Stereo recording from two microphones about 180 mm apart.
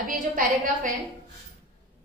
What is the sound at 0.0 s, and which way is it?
Speech, 50° right (ahead or behind).